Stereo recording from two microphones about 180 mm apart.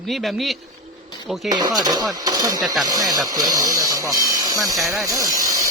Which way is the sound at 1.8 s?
20° right (ahead or behind).